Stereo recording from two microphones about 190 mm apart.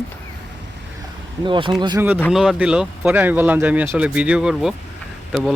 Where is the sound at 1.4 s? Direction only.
25° right (ahead or behind).